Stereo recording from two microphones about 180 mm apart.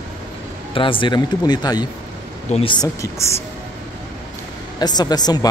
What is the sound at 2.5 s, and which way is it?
Speech, 35° left (ahead or behind).